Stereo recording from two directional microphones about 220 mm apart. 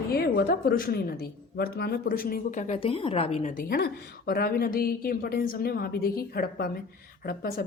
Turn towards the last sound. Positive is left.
turn(degrees=45)  # may be behind; listen again after turning